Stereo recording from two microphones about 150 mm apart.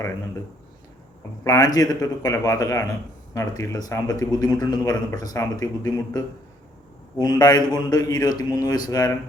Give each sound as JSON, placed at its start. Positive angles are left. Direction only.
{"t": 1.5, "sound": "a man's voice", "side_deg": 25}